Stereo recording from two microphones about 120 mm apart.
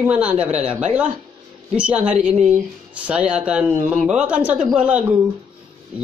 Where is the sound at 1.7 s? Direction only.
10° right (ahead or behind).